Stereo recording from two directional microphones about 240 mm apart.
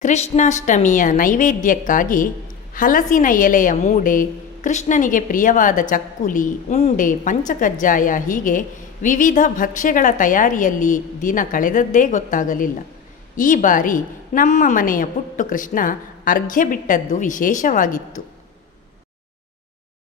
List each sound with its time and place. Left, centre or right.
0.0 s a woman's voice: left